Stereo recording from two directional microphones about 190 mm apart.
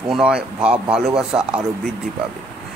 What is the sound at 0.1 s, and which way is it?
Speech, 5° right (ahead or behind).